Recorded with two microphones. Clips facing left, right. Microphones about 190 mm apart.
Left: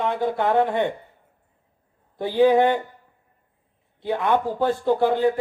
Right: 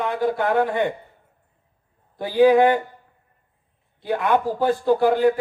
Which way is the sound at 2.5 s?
25° left (ahead or behind).